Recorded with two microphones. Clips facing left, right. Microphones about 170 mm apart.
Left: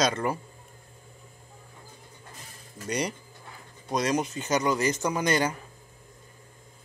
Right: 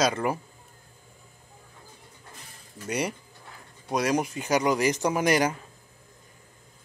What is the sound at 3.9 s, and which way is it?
Speech, 10° right (ahead or behind).